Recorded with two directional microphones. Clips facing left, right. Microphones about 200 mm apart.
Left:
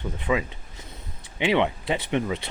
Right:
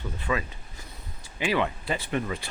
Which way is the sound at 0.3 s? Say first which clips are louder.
Left 4 dB; 15° left (ahead or behind).